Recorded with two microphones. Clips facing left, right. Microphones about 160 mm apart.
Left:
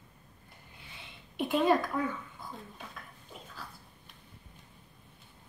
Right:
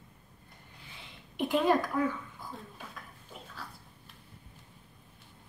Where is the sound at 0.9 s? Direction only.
Centre (ahead or behind).